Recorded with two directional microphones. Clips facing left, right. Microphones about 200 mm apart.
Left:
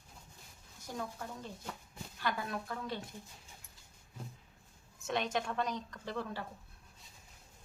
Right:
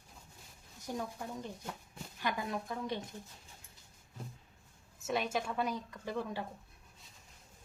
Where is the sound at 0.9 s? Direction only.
15° right (ahead or behind).